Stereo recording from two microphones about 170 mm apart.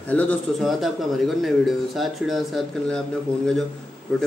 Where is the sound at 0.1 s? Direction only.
10° left (ahead or behind).